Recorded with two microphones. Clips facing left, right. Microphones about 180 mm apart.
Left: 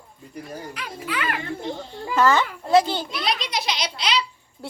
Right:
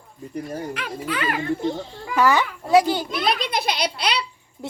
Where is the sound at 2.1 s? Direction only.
15° right (ahead or behind).